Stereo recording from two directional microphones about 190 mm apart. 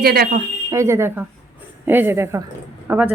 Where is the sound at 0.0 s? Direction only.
55° right (ahead or behind).